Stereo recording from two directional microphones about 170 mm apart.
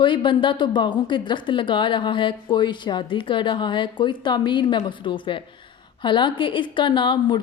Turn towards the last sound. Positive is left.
turn(degrees=30)  # may be behind; listen again after turning